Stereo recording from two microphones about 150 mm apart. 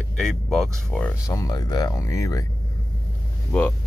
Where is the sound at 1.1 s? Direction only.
20° left (ahead or behind).